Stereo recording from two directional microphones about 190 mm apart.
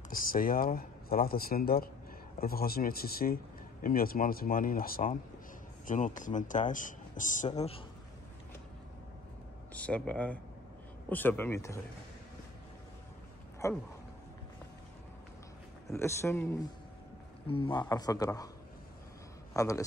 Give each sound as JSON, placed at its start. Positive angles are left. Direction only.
{"t": 0.1, "sound": "speech", "side_deg": 45}
{"t": 9.8, "sound": "speech", "side_deg": 5}
{"t": 13.6, "sound": "speech", "side_deg": 15}
{"t": 15.9, "sound": "speech", "side_deg": 15}
{"t": 17.5, "sound": "a man's voice", "side_deg": 25}
{"t": 19.5, "sound": "a man's voice", "side_deg": 15}